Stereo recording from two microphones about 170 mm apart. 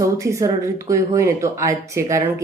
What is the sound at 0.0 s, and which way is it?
Speech, 20° right (ahead or behind).